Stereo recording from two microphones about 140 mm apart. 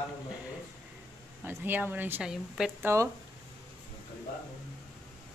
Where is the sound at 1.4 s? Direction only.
15° right (ahead or behind).